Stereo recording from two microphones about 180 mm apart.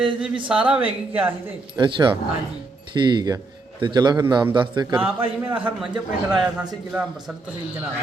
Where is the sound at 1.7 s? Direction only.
25° right (ahead or behind).